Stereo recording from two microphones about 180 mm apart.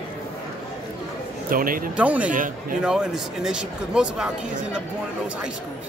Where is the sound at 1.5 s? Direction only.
50° right (ahead or behind).